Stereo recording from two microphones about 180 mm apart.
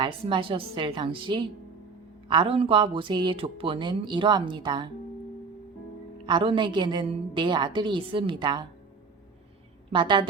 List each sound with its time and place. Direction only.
0.0 s speech: 30° right (ahead or behind)
6.2 s speech: 25° right (ahead or behind)
9.9 s speech: 25° right (ahead or behind)